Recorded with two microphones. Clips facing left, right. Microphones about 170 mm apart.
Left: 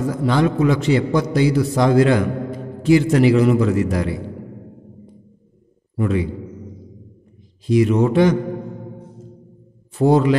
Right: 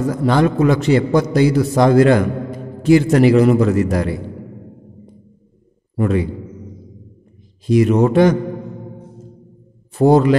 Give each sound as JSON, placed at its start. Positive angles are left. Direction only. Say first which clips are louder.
{"t": 0.1, "sound": "a man's voice", "louder": "right 3 dB", "side_deg": -50}
{"t": 5.9, "sound": "a man's voice", "louder": "right 3 dB", "side_deg": -50}
{"t": 7.6, "sound": "a man's voice", "louder": "right 2 dB", "side_deg": -50}
{"t": 9.9, "sound": "a man's voice", "louder": "right 3 dB", "side_deg": -45}